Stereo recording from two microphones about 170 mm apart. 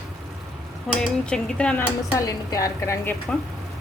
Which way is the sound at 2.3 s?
20° left (ahead or behind).